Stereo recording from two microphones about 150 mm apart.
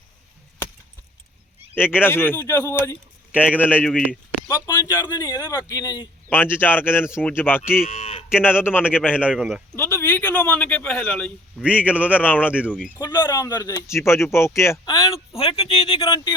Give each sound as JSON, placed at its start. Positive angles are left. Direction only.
{"t": 1.7, "sound": "speech", "side_deg": 15}
{"t": 3.8, "sound": "speech", "side_deg": -5}
{"t": 4.4, "sound": "speech", "side_deg": 25}
{"t": 6.3, "sound": "speech", "side_deg": 15}
{"t": 7.9, "sound": "cattle", "side_deg": 45}
{"t": 8.4, "sound": "speech", "side_deg": 15}
{"t": 9.3, "sound": "speech", "side_deg": -5}
{"t": 9.7, "sound": "speech", "side_deg": 15}
{"t": 11.5, "sound": "a man's voice", "side_deg": -5}
{"t": 12.0, "sound": "speech", "side_deg": 10}
{"t": 12.5, "sound": "a man's voice", "side_deg": -10}
{"t": 13.0, "sound": "speech", "side_deg": 30}
{"t": 15.4, "sound": "speech", "side_deg": 40}